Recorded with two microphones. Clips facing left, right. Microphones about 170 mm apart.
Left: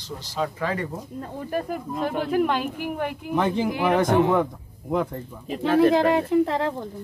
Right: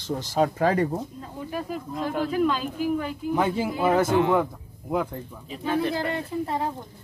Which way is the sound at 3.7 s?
90° left.